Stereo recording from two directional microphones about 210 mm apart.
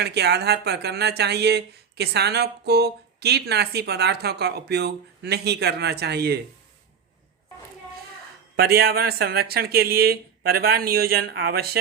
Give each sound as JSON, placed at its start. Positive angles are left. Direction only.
{"t": 0.0, "sound": "speech", "side_deg": -50}
{"t": 8.5, "sound": "speech", "side_deg": -50}